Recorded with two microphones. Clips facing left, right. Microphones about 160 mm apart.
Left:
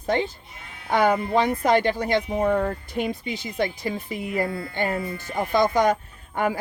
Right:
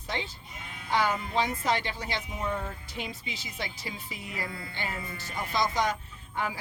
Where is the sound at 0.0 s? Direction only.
50° left (ahead or behind).